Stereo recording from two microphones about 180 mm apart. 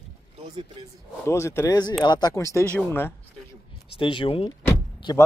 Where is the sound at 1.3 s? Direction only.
15° left (ahead or behind).